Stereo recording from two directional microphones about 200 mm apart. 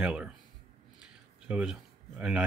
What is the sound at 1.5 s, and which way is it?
Speech, 5° right (ahead or behind).